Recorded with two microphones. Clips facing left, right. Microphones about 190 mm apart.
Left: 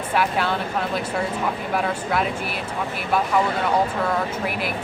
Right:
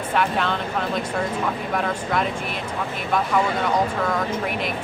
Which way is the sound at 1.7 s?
5° left (ahead or behind).